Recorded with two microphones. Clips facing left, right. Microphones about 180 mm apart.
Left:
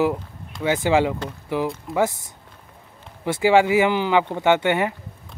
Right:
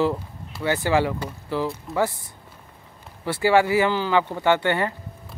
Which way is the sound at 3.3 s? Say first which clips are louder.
Left 2 dB; 15° left (ahead or behind).